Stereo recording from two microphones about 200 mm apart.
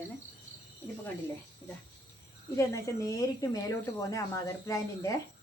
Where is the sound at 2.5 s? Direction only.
15° left (ahead or behind).